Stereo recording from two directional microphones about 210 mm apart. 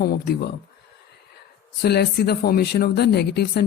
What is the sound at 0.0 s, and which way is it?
Speech, 45° left (ahead or behind).